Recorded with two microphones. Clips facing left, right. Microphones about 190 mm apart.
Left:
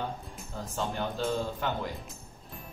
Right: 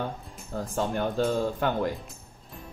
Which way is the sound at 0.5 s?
55° right (ahead or behind).